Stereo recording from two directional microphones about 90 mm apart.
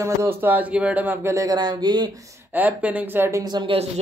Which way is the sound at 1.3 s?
45° right (ahead or behind).